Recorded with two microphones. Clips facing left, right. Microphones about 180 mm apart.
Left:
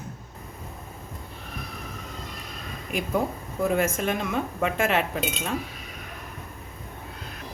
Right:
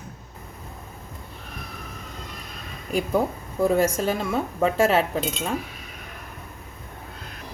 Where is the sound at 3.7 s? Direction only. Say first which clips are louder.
Right 3 dB; 30° right (ahead or behind).